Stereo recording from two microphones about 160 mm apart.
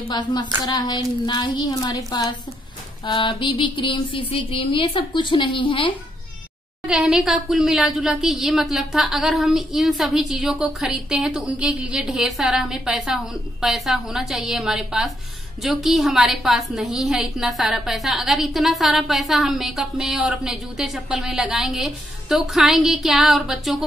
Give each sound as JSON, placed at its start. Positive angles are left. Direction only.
{"t": 0.1, "sound": "a woman's voice", "side_deg": 25}
{"t": 3.1, "sound": "a sound", "side_deg": 30}
{"t": 6.9, "sound": "a woman's voice", "side_deg": -5}